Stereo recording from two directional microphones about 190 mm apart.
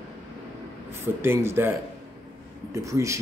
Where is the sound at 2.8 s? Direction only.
15° right (ahead or behind).